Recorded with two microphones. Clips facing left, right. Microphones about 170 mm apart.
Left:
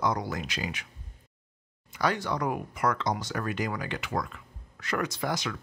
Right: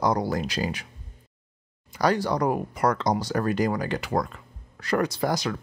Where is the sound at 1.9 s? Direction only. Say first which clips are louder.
Right 5 dB; 35° right (ahead or behind).